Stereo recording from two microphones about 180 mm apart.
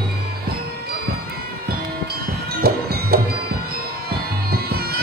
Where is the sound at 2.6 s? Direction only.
60° right (ahead or behind).